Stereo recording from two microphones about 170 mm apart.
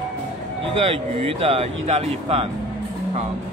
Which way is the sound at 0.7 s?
35° right (ahead or behind).